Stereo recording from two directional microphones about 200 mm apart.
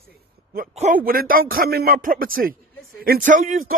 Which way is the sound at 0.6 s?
40° right (ahead or behind).